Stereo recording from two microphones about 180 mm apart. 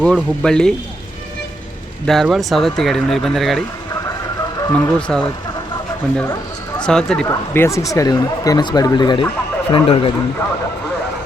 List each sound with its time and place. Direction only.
0.0 s speech: 5° left (ahead or behind)
2.0 s speech: centre (ahead or behind)
4.7 s speech: 10° left (ahead or behind)
6.8 s speech: 5° left (ahead or behind)
7.3 s a man's voice: 15° left (ahead or behind); by 10.1 s 30° left (ahead or behind)